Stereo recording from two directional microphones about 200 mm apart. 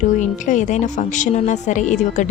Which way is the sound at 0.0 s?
40° left (ahead or behind).